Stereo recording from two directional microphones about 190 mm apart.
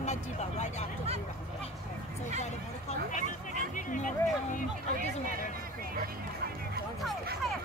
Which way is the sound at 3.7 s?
45° left (ahead or behind).